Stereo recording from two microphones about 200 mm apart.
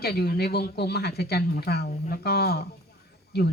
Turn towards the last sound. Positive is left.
turn(degrees=55)  # may be behind; listen again after turning